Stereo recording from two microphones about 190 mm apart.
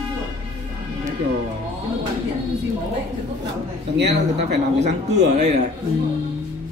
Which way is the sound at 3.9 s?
65° right (ahead or behind).